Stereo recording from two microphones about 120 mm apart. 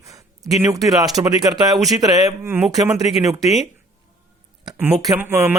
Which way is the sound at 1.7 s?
Centre (ahead or behind).